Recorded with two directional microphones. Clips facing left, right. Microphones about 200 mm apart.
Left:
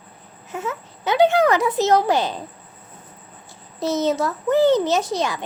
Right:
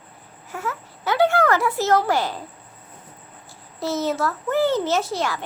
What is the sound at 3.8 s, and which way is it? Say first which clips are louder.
A child's voice: left 3 dB; 20° left (ahead or behind).